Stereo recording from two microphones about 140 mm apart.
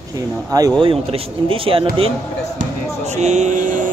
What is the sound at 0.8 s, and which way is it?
Speech, 40° right (ahead or behind).